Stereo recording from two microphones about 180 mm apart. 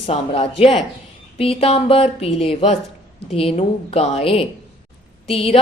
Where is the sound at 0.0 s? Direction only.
30° left (ahead or behind).